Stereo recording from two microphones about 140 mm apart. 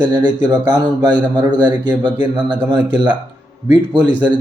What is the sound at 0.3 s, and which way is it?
Speech, 30° right (ahead or behind).